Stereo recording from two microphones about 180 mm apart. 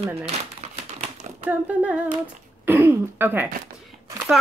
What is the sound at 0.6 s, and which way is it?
Crumpling, 40° right (ahead or behind).